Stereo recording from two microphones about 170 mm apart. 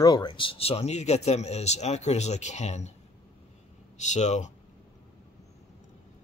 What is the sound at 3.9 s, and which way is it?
Speech, 45° left (ahead or behind).